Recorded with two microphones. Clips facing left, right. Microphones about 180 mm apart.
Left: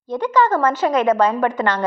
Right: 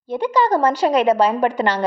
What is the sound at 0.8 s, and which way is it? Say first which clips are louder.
Speech: right 2 dB; 30° right (ahead or behind).